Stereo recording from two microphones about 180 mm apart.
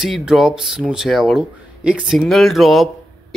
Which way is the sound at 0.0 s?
5° right (ahead or behind).